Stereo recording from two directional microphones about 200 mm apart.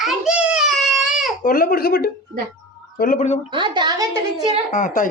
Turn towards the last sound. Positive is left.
turn(degrees=40)  # may be behind; listen again after turning